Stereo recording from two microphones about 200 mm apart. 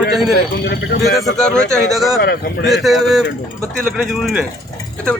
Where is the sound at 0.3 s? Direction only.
55° left (ahead or behind).